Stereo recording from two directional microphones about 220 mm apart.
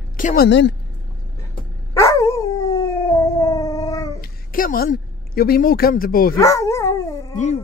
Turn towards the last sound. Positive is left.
turn(degrees=15)  # may be behind; listen again after turning